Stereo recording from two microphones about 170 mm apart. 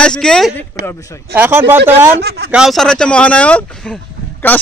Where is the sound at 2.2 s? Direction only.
70° right (ahead or behind).